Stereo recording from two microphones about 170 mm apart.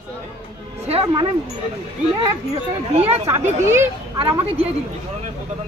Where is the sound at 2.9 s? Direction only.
40° right (ahead or behind).